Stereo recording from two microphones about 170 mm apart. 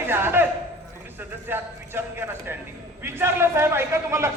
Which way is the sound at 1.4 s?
10° right (ahead or behind).